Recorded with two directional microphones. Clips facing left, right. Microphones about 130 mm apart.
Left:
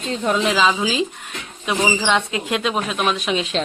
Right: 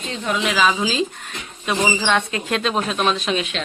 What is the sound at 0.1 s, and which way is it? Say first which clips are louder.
Speech: left 3 dB; 35° left (ahead or behind).